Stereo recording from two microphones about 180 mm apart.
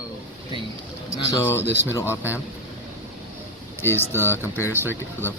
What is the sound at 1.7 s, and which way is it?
Speech, 70° left (ahead or behind).